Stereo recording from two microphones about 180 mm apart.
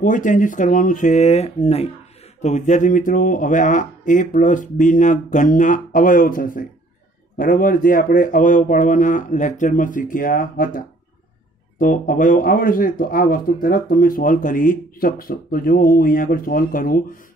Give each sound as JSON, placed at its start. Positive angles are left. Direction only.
{"t": 0.0, "sound": "speech", "side_deg": 45}
{"t": 11.8, "sound": "speech", "side_deg": 50}